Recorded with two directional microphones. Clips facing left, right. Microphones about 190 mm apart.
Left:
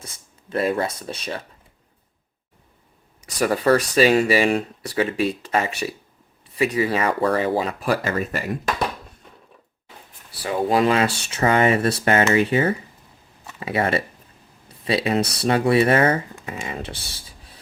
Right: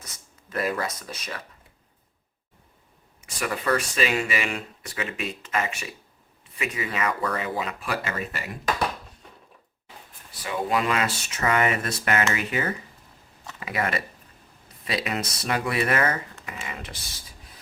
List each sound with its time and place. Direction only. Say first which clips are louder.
0.0 s speech: left 5 dB; 30° left (ahead or behind)
3.2 s speech: left 8 dB; 40° left (ahead or behind)
10.4 s speech: left 6 dB; 35° left (ahead or behind)